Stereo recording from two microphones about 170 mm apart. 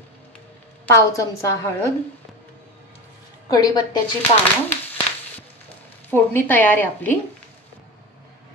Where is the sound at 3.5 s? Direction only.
25° left (ahead or behind).